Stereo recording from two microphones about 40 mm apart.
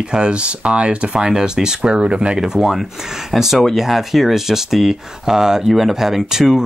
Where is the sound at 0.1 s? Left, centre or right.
Right.